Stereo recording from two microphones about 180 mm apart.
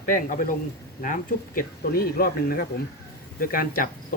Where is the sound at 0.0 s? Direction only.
50° left (ahead or behind).